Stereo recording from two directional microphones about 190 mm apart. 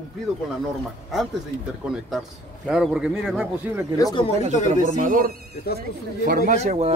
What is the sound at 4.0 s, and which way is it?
Speech, 20° left (ahead or behind).